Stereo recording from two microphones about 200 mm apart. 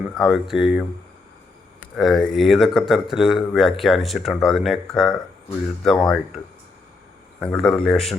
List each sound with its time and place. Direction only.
0.1 s speech: centre (ahead or behind)
2.0 s speech: centre (ahead or behind)